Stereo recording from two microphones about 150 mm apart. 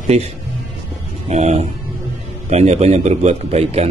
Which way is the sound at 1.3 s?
50° right (ahead or behind).